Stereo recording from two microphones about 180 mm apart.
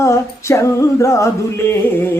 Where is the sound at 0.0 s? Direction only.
15° left (ahead or behind).